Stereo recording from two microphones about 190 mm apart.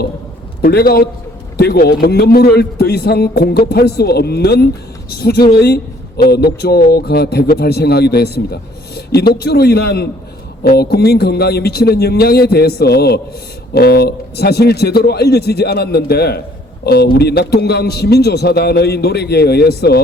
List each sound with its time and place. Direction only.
0.6 s a man's voice: 55° left (ahead or behind)